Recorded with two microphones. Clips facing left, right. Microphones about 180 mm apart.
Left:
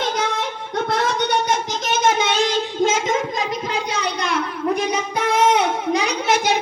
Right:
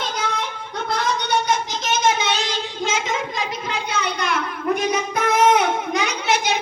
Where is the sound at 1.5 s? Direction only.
50° left (ahead or behind).